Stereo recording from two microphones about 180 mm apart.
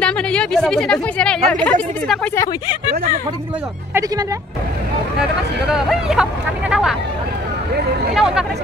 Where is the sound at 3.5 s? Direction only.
5° right (ahead or behind).